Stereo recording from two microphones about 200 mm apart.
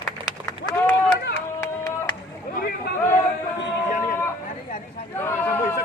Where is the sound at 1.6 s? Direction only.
15° left (ahead or behind).